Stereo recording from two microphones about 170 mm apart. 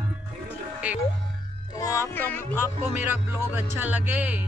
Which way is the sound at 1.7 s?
20° left (ahead or behind).